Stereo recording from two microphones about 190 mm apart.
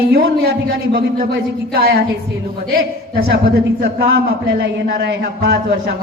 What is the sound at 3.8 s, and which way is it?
Speech, 65° right (ahead or behind).